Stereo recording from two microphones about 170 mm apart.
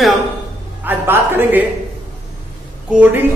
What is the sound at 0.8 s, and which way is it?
Speech, 10° right (ahead or behind).